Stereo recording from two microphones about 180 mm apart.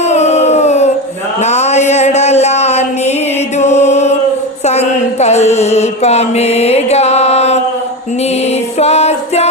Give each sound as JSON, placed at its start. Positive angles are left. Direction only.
{"t": 0.0, "sound": "a sound", "side_deg": 40}
{"t": 3.6, "sound": "chant", "side_deg": 40}
{"t": 4.6, "sound": "music", "side_deg": 35}
{"t": 8.8, "sound": "music", "side_deg": 35}